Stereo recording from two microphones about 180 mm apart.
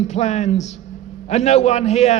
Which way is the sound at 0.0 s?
40° left (ahead or behind).